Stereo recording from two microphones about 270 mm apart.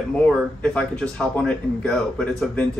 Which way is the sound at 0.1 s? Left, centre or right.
Centre.